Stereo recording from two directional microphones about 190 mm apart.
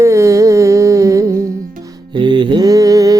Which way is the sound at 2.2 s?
25° right (ahead or behind).